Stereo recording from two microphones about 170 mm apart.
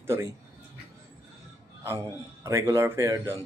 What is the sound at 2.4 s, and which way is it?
Speech, 15° right (ahead or behind).